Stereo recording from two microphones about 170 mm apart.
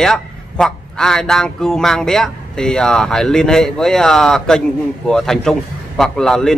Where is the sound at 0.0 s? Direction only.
5° left (ahead or behind).